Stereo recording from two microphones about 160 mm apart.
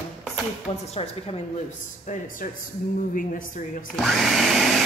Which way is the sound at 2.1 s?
55° left (ahead or behind).